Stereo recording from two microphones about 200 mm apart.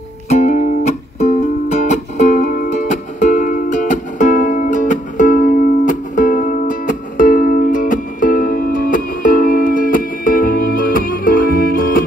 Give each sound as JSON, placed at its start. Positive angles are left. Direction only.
{"t": 0.3, "sound": "music", "side_deg": 35}